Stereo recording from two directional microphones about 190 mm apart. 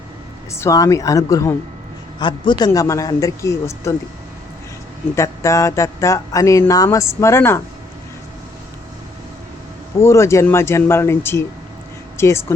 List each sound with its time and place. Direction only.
0.5 s a man's voice: 15° left (ahead or behind)
5.1 s speech: 15° left (ahead or behind)
10.0 s speech: 15° left (ahead or behind)